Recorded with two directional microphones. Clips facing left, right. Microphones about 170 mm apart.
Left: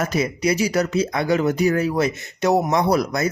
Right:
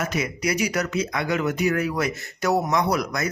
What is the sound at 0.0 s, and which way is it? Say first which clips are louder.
Speech: left 5 dB; 35° left (ahead or behind).